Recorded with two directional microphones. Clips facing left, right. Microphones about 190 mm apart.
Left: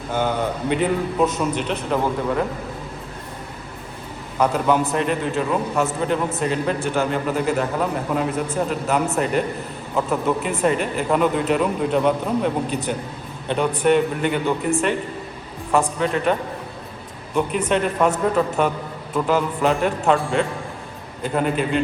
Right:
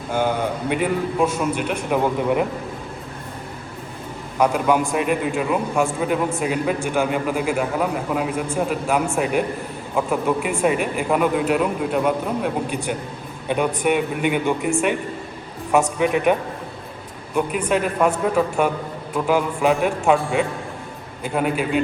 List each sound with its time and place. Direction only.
0.1 s a man's voice: 10° right (ahead or behind)
4.4 s a man's voice: 10° right (ahead or behind)
17.7 s a man's voice: 5° right (ahead or behind)